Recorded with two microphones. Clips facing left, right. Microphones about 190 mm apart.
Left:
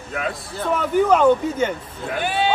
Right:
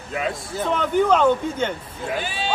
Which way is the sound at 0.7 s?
5° left (ahead or behind).